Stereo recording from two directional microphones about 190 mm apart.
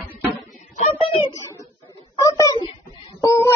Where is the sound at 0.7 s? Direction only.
35° left (ahead or behind).